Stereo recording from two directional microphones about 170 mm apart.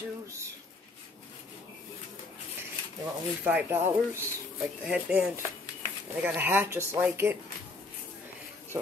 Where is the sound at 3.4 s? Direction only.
10° right (ahead or behind).